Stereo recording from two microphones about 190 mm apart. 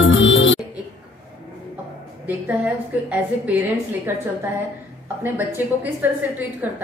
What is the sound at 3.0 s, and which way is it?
Speech, 10° right (ahead or behind).